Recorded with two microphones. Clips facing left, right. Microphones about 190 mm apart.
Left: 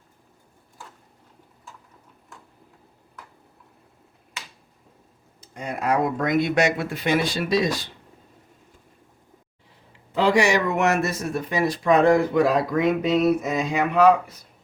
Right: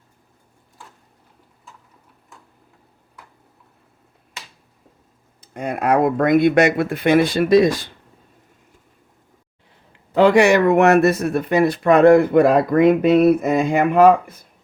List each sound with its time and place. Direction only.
5.5 s speech: 55° right (ahead or behind)
10.2 s speech: 55° right (ahead or behind)